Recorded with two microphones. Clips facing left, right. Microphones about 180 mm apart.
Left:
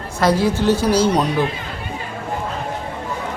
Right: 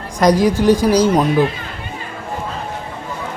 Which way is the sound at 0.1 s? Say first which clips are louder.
Right 4 dB; 15° right (ahead or behind).